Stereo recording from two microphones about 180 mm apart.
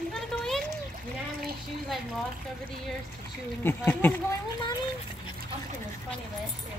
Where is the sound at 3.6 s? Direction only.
10° left (ahead or behind).